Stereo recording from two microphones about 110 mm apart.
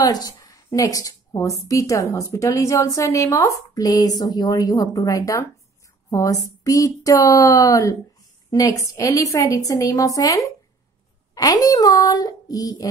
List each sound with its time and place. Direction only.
0.0 s a woman's voice: 35° left (ahead or behind)